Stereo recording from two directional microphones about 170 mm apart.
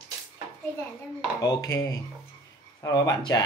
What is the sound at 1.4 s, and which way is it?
Speech, 20° left (ahead or behind).